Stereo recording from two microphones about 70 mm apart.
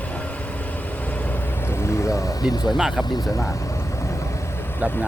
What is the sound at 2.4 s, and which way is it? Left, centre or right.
Speech, left.